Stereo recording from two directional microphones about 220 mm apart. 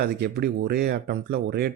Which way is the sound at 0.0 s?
45° right (ahead or behind).